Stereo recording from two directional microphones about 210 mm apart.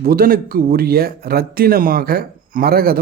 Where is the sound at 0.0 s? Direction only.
45° right (ahead or behind).